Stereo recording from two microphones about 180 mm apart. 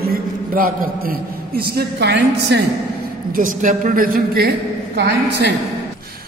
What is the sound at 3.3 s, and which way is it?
A woman's voice, 45° right (ahead or behind).